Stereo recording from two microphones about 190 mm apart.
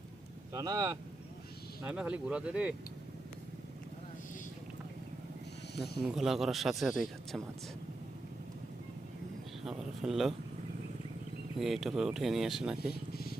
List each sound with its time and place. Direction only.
0.5 s speech: 20° right (ahead or behind)
1.8 s speech: 5° right (ahead or behind)
5.7 s speech: centre (ahead or behind)
9.6 s speech: centre (ahead or behind)
11.6 s speech: centre (ahead or behind)
12.9 s vehicle: 55° left (ahead or behind)